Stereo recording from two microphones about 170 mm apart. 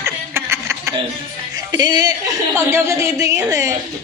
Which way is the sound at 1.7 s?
25° right (ahead or behind).